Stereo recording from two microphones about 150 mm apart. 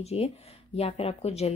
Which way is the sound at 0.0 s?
45° left (ahead or behind).